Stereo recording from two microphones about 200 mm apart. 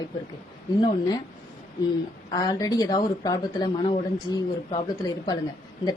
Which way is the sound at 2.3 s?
20° left (ahead or behind).